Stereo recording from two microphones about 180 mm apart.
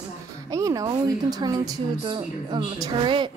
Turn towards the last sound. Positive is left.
turn(degrees=-25)  # may be behind; listen again after turning